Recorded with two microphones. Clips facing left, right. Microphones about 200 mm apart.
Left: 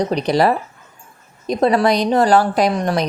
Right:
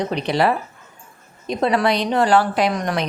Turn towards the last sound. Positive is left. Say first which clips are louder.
# left 3 dB
turn(degrees=35)  # may be behind; listen again after turning